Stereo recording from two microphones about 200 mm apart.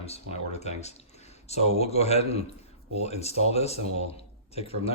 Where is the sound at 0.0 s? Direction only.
30° left (ahead or behind).